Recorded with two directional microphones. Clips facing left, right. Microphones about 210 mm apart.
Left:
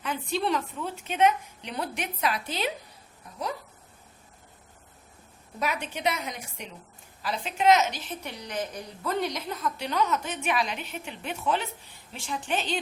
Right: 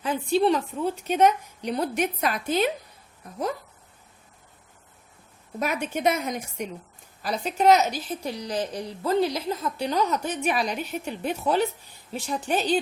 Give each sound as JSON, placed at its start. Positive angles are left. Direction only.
{"t": 0.0, "sound": "a woman's voice", "side_deg": -35}
{"t": 5.5, "sound": "a woman's voice", "side_deg": -45}